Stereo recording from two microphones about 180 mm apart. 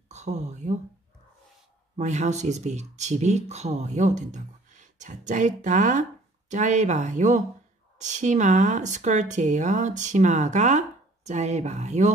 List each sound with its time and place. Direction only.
0.1 s speech: 40° right (ahead or behind)
2.0 s speech: 40° right (ahead or behind)